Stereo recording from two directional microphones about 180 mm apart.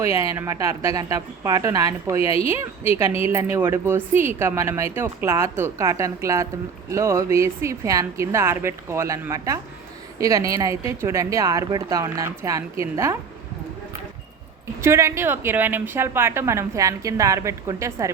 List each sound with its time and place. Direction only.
0.0 s a woman's voice: 15° right (ahead or behind)
14.8 s a woman's voice: 15° right (ahead or behind)